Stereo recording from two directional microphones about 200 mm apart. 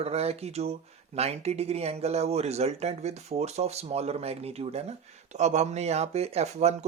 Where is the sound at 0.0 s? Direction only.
30° right (ahead or behind).